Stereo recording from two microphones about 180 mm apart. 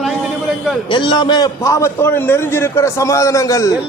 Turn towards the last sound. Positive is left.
turn(degrees=15)  # may be behind; listen again after turning